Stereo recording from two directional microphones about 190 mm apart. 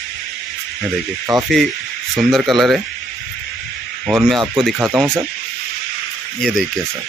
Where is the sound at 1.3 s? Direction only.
20° right (ahead or behind).